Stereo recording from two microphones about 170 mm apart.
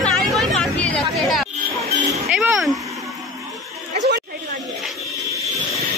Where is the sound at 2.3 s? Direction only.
5° right (ahead or behind).